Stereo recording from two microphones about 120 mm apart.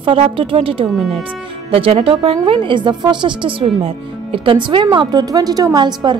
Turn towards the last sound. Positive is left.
turn(degrees=-40)  # may be behind; listen again after turning